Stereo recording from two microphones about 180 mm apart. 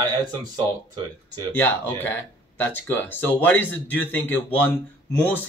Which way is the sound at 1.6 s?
10° left (ahead or behind).